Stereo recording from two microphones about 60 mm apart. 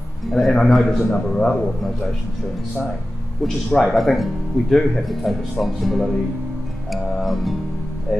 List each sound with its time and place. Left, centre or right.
0.3 s speech: centre
1.1 s a man's voice: centre
3.4 s speech: centre